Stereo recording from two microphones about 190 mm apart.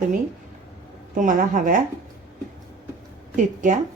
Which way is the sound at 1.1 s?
45° right (ahead or behind).